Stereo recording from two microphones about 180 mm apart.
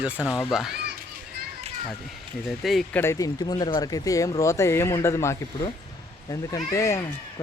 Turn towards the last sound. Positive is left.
turn(degrees=15)  # may be behind; listen again after turning